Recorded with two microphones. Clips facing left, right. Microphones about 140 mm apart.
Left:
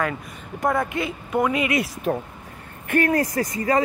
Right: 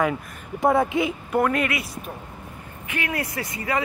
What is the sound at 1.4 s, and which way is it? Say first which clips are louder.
Speech: even; 5° left (ahead or behind).